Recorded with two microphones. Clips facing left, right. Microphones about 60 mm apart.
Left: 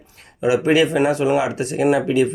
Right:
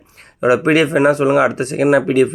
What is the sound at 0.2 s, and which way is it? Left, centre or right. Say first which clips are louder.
Speech: right 4 dB; right.